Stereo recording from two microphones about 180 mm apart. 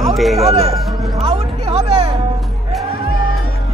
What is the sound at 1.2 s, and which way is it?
Music, 35° right (ahead or behind).